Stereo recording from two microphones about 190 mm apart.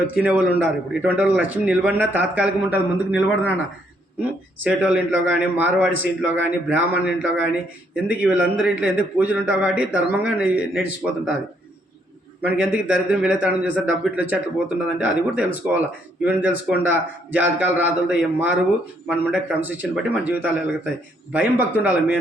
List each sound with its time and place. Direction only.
0.2 s speech: 10° right (ahead or behind)
4.6 s speech: 5° right (ahead or behind)
12.5 s speech: 10° right (ahead or behind)